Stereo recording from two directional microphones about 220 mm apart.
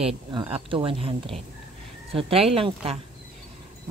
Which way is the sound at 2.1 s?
25° right (ahead or behind).